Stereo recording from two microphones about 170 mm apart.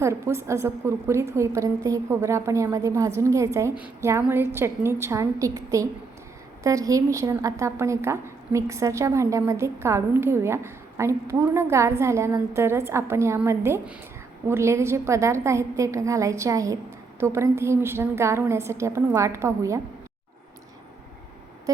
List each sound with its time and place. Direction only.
0.0 s a woman's voice: 15° right (ahead or behind)